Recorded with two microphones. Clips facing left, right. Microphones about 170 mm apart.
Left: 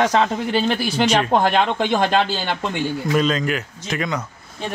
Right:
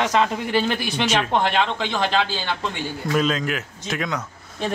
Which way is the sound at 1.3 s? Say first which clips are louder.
Left 3 dB; 45° left (ahead or behind).